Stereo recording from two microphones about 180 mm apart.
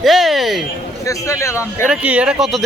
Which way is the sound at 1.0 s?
15° left (ahead or behind).